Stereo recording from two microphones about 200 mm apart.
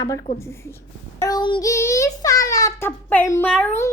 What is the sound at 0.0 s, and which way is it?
A woman's voice, 15° left (ahead or behind).